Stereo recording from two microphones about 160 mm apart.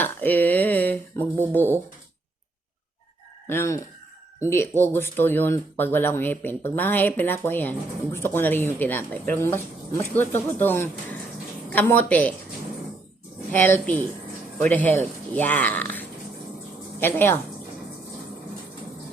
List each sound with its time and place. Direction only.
0.0 s a sound: 10° left (ahead or behind)
1.5 s speech: 15° left (ahead or behind)
3.4 s speech: 15° left (ahead or behind)
13.5 s speech: 10° left (ahead or behind)